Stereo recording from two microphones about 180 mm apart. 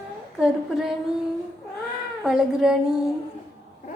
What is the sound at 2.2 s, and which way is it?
Speech, centre (ahead or behind).